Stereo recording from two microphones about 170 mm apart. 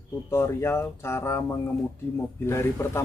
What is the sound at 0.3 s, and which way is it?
Speech, 15° left (ahead or behind).